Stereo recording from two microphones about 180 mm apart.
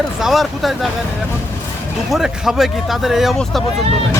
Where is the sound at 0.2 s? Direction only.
Centre (ahead or behind).